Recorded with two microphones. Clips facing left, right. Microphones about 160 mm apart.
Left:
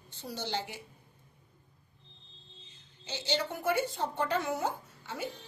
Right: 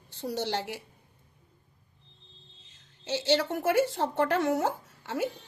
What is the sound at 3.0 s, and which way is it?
Speech, 85° right.